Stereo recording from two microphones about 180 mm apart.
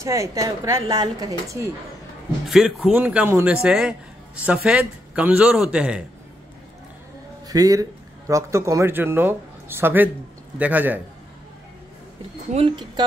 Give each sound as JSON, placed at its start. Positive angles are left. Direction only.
{"t": 0.0, "sound": "speech", "side_deg": -15}
{"t": 2.4, "sound": "speech", "side_deg": -5}
{"t": 7.4, "sound": "speech", "side_deg": -20}
{"t": 12.5, "sound": "speech", "side_deg": -30}